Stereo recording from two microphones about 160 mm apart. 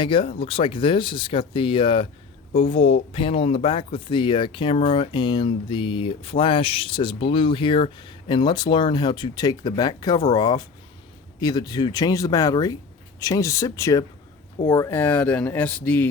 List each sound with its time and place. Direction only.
0.0 s speech: 35° left (ahead or behind); by 16.0 s 10° left (ahead or behind)